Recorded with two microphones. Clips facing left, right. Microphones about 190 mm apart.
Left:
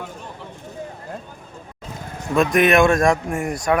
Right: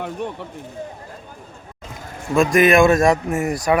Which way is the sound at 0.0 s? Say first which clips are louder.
Right 8 dB; 65° right (ahead or behind).